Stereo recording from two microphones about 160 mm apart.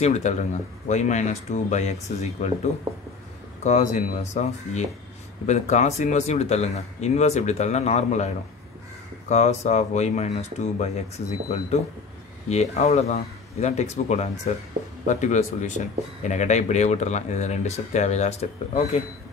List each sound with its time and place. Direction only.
0.0 s speech: 45° left (ahead or behind)
9.3 s speech: 45° left (ahead or behind)